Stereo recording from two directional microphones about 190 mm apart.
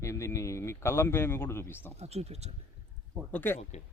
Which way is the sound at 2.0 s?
35° right (ahead or behind).